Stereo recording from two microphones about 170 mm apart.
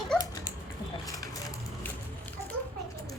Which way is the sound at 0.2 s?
20° left (ahead or behind).